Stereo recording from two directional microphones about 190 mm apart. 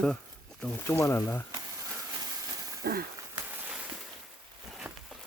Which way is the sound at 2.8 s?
55° right (ahead or behind).